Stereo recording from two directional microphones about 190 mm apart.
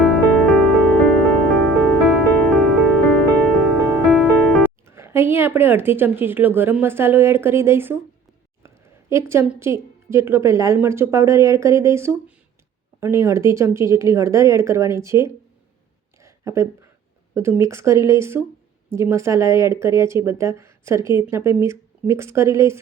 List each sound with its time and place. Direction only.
0.0 s music: 5° left (ahead or behind)
4.9 s a woman's voice: 15° right (ahead or behind)
16.2 s a sound: 15° right (ahead or behind)
17.3 s speech: 15° right (ahead or behind)